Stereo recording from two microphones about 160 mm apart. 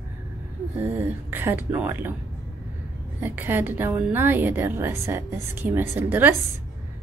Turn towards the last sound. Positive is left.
turn(degrees=-15)  # may be behind; listen again after turning